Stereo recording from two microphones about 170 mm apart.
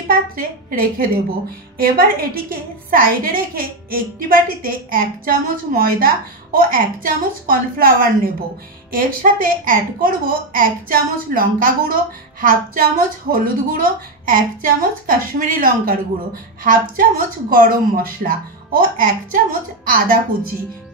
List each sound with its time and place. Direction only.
0.1 s a woman's voice: 60° right (ahead or behind)